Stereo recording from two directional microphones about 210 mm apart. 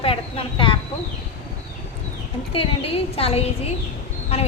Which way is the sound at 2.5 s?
25° left (ahead or behind).